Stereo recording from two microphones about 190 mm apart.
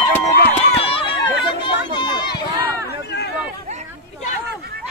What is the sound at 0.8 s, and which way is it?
Run, 30° left (ahead or behind).